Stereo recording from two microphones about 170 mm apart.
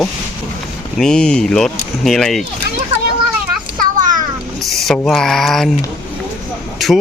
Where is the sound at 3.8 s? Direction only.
50° right (ahead or behind).